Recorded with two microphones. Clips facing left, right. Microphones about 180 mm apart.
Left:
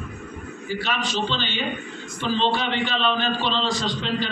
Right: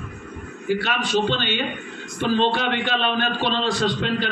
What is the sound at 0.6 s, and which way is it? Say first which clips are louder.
A man's voice: right 4 dB; 60° right (ahead or behind).